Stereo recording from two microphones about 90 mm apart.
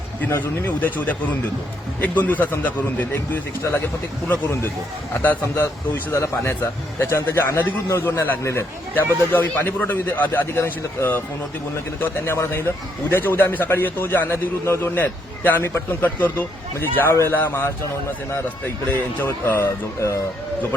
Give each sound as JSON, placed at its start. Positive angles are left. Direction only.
{"t": 0.3, "sound": "a man's voice", "side_deg": 25}